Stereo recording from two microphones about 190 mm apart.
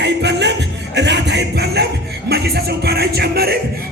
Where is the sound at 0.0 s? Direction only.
65° right (ahead or behind).